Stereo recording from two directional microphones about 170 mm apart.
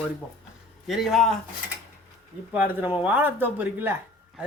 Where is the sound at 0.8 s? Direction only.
Centre (ahead or behind).